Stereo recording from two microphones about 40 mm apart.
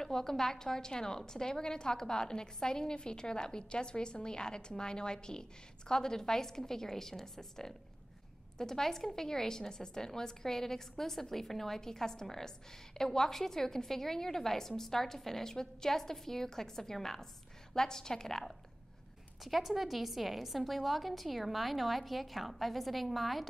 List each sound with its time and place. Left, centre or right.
0.0 s a woman's voice: centre
19.4 s a woman's voice: centre